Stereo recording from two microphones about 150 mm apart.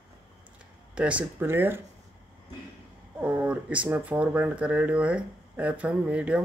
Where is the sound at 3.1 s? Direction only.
10° right (ahead or behind).